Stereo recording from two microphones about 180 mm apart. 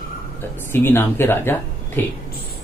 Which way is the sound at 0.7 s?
10° left (ahead or behind).